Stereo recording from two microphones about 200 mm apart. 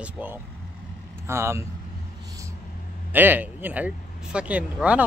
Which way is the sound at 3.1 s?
10° right (ahead or behind).